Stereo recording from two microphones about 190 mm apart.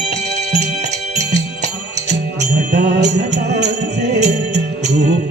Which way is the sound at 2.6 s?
60° right (ahead or behind).